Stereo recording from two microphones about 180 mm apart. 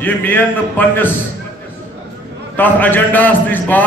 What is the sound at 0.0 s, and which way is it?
A man's voice, 10° left (ahead or behind).